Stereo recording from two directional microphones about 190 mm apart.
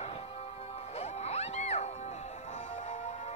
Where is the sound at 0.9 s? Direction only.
35° left (ahead or behind).